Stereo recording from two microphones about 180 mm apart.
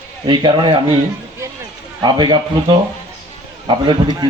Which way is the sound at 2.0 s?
25° right (ahead or behind).